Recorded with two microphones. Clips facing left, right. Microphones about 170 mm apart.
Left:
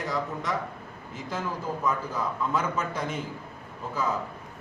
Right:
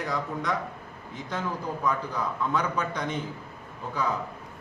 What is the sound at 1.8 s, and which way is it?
A man's voice, 5° left (ahead or behind).